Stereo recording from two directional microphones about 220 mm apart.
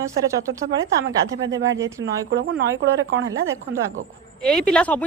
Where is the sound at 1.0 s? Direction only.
60° right (ahead or behind).